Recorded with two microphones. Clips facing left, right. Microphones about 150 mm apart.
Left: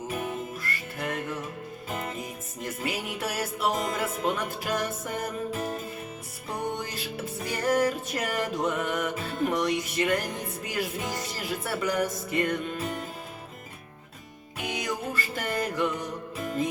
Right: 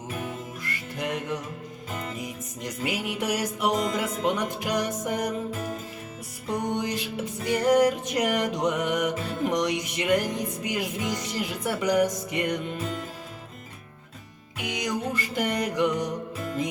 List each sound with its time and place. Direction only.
0.6 s music: 20° right (ahead or behind)
2.6 s music: 15° right (ahead or behind)
6.7 s music: 20° right (ahead or behind)
14.6 s music: 20° right (ahead or behind)